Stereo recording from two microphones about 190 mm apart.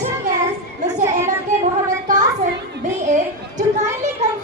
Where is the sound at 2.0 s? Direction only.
40° right (ahead or behind).